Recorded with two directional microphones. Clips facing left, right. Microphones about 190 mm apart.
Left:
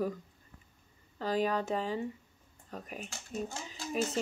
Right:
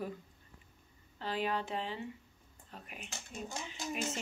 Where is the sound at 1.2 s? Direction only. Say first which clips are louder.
Left 5 dB; 40° left (ahead or behind).